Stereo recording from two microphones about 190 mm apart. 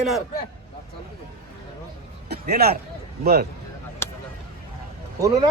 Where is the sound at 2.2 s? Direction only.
55° right (ahead or behind).